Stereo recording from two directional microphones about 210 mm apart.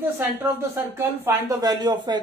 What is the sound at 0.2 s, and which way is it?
A woman's voice, 10° right (ahead or behind).